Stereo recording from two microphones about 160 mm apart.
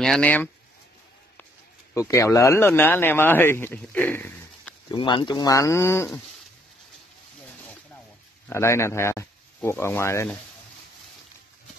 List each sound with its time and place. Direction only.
0.0 s speech: 5° left (ahead or behind)
2.0 s speech: 20° left (ahead or behind)
4.9 s speech: 30° left (ahead or behind)
8.5 s speech: 15° left (ahead or behind)